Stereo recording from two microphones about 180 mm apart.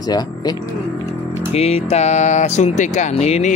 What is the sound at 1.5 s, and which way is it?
Speech, 35° left (ahead or behind).